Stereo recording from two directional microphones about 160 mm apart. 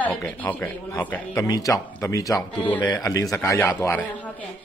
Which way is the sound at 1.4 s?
20° left (ahead or behind).